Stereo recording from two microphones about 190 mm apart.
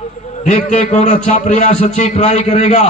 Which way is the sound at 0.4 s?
40° left (ahead or behind).